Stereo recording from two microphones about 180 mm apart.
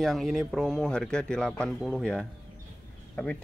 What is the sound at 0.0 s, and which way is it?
Speech, centre (ahead or behind).